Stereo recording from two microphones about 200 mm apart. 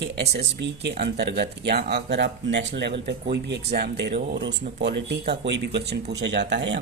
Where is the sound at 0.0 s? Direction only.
60° right (ahead or behind).